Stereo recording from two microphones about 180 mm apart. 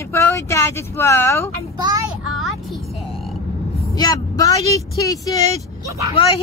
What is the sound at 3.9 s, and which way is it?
A woman's voice, 20° left (ahead or behind).